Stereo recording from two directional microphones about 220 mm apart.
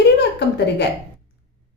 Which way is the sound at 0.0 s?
50° left (ahead or behind).